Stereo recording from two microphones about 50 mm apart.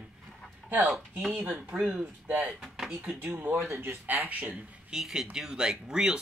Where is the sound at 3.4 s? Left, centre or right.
Right.